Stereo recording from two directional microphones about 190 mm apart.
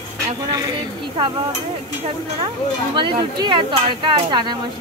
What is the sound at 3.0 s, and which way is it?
Speech, 25° right (ahead or behind).